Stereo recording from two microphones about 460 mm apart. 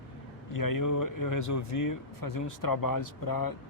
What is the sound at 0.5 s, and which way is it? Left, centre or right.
Speech, left.